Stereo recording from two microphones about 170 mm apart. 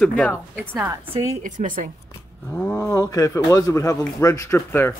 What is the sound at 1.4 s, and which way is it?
Speech, 50° right (ahead or behind).